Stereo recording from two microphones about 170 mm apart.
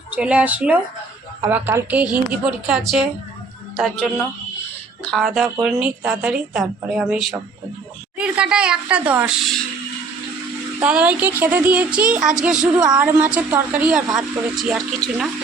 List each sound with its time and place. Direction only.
0.1 s a woman's voice: 5° right (ahead or behind)
5.0 s a woman's voice: centre (ahead or behind)
10.8 s a woman's voice: 10° right (ahead or behind)